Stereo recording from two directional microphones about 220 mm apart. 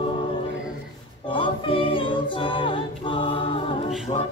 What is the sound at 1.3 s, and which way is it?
Music, 25° left (ahead or behind).